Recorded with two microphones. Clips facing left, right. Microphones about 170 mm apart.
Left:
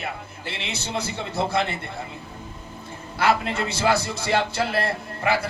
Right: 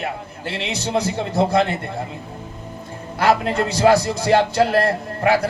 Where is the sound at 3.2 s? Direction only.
40° right (ahead or behind).